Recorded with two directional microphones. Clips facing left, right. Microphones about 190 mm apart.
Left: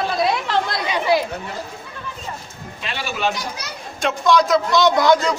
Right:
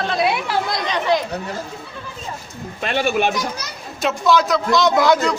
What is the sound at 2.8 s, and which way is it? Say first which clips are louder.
Speech: right 6 dB; 55° right (ahead or behind).